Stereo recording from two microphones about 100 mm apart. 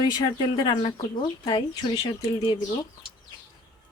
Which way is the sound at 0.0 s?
45° left (ahead or behind).